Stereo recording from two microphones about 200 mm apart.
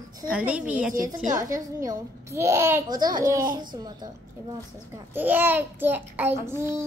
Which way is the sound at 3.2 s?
45° right (ahead or behind).